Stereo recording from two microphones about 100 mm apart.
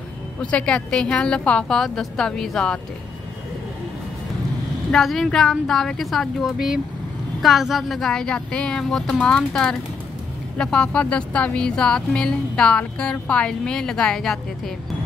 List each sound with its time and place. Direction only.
0.4 s speech: 10° left (ahead or behind)
4.9 s a woman's voice: centre (ahead or behind)